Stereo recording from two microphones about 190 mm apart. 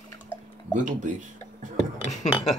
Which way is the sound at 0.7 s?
40° right (ahead or behind).